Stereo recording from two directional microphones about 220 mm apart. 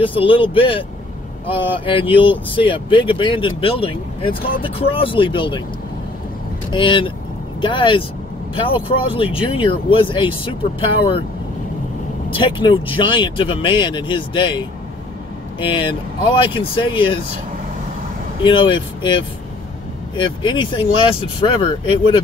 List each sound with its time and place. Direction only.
0.0 s speech: 25° left (ahead or behind)
6.7 s speech: 20° left (ahead or behind)
12.4 s speech: 25° left (ahead or behind)
15.6 s speech: 25° left (ahead or behind)
18.4 s speech: 20° left (ahead or behind)